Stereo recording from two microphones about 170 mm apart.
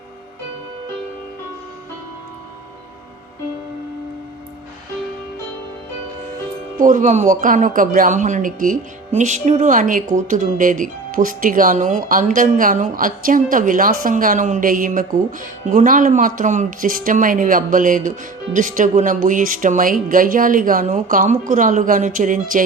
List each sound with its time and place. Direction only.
6.7 s speech: 50° right (ahead or behind)